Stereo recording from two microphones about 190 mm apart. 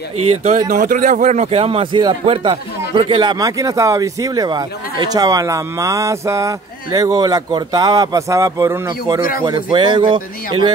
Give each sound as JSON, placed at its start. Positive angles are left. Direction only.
{"t": 0.4, "sound": "speech", "side_deg": -40}